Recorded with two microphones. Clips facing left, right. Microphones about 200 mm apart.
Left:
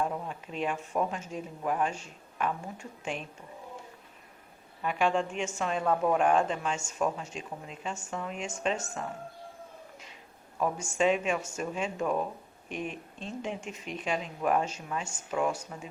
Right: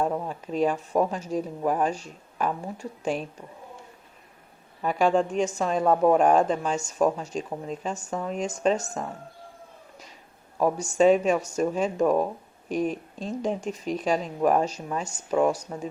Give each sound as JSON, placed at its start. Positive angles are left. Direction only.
{"t": 0.0, "sound": "speech", "side_deg": -40}
{"t": 4.8, "sound": "speech", "side_deg": -40}
{"t": 10.6, "sound": "speech", "side_deg": -40}